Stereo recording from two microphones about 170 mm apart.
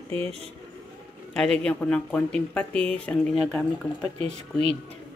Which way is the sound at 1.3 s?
5° left (ahead or behind).